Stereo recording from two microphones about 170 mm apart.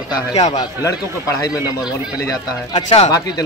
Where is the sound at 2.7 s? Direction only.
40° left (ahead or behind).